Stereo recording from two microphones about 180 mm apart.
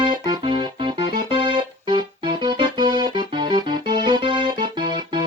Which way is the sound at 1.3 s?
25° right (ahead or behind).